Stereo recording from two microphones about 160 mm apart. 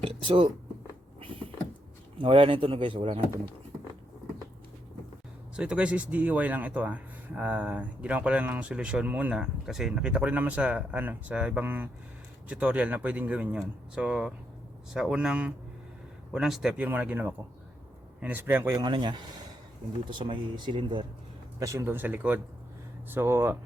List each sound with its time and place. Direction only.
0.0 s speech: 35° right (ahead or behind)
2.1 s speech: 35° right (ahead or behind)
5.5 s speech: 5° right (ahead or behind)
18.8 s speech: 30° right (ahead or behind)
21.6 s speech: 20° right (ahead or behind)